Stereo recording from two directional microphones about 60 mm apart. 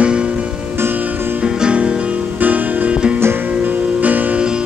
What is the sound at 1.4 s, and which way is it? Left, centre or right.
Music, centre.